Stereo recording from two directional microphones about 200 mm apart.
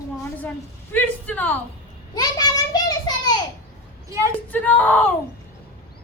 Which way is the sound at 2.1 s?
20° left (ahead or behind).